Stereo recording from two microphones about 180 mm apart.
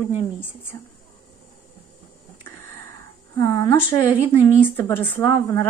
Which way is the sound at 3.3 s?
20° left (ahead or behind).